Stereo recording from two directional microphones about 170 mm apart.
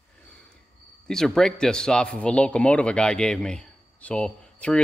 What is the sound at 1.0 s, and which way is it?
A man's voice, 5° left (ahead or behind).